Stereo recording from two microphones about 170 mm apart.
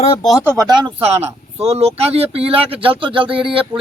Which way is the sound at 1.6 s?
35° right (ahead or behind).